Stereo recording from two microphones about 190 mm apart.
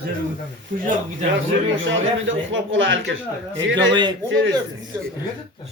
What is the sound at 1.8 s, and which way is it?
A man's voice, 75° right (ahead or behind).